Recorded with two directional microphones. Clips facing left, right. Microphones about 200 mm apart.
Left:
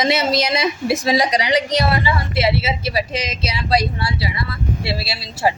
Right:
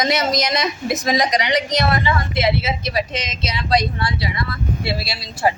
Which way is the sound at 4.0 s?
5° left (ahead or behind).